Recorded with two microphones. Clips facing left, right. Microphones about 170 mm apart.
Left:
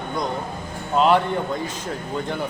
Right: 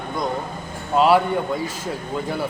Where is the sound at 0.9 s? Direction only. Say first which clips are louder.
Right 2 dB; 5° right (ahead or behind).